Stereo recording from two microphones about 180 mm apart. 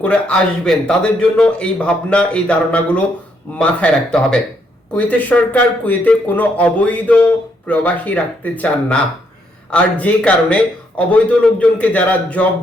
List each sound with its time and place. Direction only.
0.0 s a man's voice: 5° left (ahead or behind)